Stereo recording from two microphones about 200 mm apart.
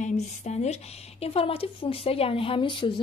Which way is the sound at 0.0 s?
35° left (ahead or behind).